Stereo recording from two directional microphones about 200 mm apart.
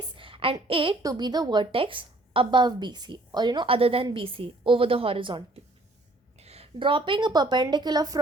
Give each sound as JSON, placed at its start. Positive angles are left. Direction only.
{"t": 0.2, "sound": "a woman's voice", "side_deg": -25}
{"t": 6.4, "sound": "a woman's voice", "side_deg": -30}